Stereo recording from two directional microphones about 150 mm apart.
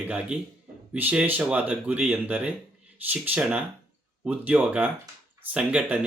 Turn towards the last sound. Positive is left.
turn(degrees=-10)  # may be behind; listen again after turning